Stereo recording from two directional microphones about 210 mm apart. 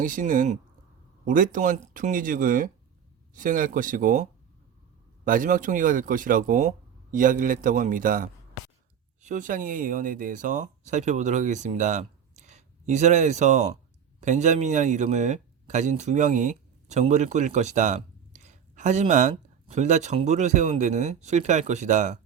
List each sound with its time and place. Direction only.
0.0 s speech: 40° right (ahead or behind)